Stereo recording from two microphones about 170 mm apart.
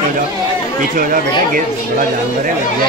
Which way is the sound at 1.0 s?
55° right (ahead or behind).